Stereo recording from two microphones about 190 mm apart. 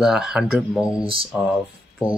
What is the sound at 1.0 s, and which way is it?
Speech, 30° right (ahead or behind).